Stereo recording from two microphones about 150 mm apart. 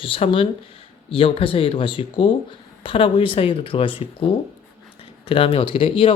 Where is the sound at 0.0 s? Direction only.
35° left (ahead or behind).